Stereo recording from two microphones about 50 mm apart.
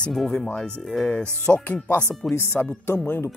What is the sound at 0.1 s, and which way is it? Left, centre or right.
Speech, centre.